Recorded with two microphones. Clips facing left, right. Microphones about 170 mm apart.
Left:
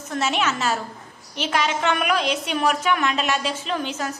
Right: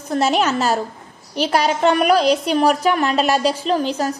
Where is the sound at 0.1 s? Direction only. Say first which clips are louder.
Right 6 dB; 35° right (ahead or behind).